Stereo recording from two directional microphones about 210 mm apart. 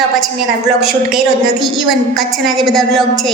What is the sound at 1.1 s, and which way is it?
A woman's voice, centre (ahead or behind).